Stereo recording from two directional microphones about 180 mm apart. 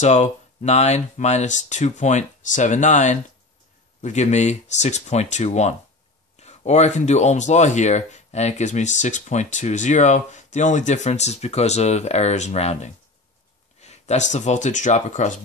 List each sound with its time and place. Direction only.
0.0 s speech: 40° left (ahead or behind)